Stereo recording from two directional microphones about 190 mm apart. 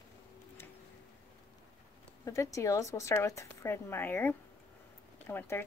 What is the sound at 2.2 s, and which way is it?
Speech, 15° left (ahead or behind).